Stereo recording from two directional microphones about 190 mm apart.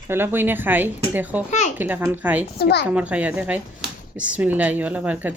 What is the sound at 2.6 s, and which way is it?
Speech, 55° left (ahead or behind).